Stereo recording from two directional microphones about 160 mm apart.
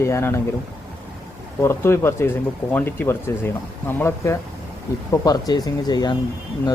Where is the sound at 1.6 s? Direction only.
15° left (ahead or behind).